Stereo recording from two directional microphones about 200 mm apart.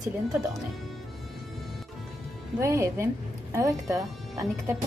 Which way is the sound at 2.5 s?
15° right (ahead or behind).